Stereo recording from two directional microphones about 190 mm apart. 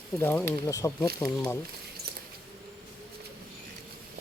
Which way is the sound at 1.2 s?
5° left (ahead or behind).